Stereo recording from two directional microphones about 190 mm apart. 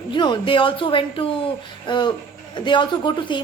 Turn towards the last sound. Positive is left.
turn(degrees=25)  # may be behind; listen again after turning